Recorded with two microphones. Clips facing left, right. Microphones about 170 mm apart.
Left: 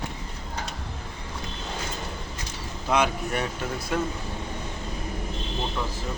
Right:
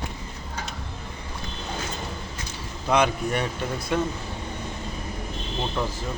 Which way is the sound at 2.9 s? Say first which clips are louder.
Right 2 dB; 5° left (ahead or behind).